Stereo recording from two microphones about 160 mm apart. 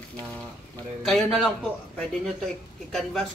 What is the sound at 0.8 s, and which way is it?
A man's voice, centre (ahead or behind).